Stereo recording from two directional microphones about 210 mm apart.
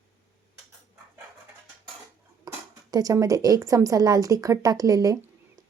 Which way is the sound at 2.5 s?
15° right (ahead or behind).